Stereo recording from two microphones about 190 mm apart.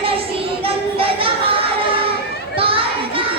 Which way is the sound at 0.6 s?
30° right (ahead or behind).